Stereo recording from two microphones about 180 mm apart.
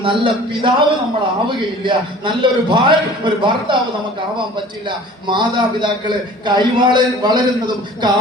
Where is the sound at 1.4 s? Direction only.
25° right (ahead or behind).